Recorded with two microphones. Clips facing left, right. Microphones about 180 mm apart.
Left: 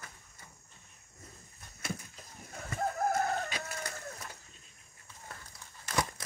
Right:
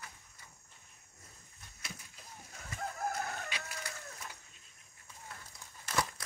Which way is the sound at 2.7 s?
45° left (ahead or behind).